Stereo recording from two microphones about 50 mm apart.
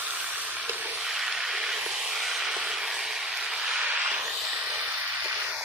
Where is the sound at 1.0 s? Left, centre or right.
Centre.